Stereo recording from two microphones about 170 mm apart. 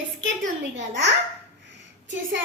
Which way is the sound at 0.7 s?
90° right.